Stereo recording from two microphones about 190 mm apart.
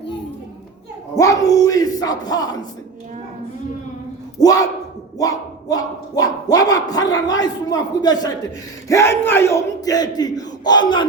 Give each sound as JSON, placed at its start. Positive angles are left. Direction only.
{"t": 1.1, "sound": "speech", "side_deg": 20}
{"t": 4.4, "sound": "speech", "side_deg": 20}
{"t": 8.9, "sound": "battle cry", "side_deg": 15}
{"t": 10.2, "sound": "speech", "side_deg": 20}